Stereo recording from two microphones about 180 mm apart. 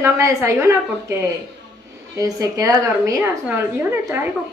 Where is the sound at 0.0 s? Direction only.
15° right (ahead or behind).